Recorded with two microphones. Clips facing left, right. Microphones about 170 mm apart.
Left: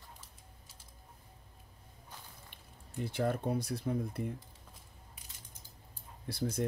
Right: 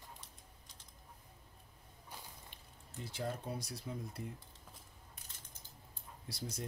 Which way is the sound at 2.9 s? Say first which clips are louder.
Left 8 dB; 60° left (ahead or behind).